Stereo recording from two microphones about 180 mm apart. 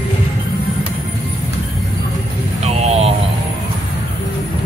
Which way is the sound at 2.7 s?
35° right (ahead or behind).